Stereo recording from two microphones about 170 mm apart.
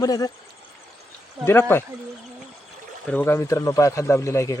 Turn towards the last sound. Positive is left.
turn(degrees=15)  # may be behind; listen again after turning